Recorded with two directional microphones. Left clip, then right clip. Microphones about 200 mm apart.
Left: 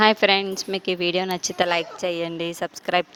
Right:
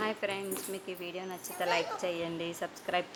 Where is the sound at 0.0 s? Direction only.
45° left (ahead or behind).